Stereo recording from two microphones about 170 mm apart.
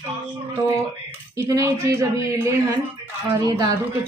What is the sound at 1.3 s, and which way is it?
A woman's voice, 15° right (ahead or behind).